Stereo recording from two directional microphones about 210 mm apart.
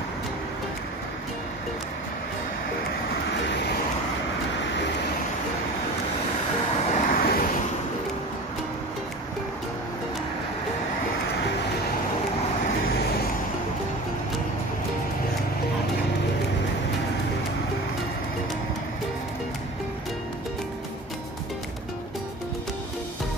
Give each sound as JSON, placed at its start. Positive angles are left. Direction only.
{"t": 3.3, "sound": "vehicle", "side_deg": 55}
{"t": 6.9, "sound": "vehicle", "side_deg": 40}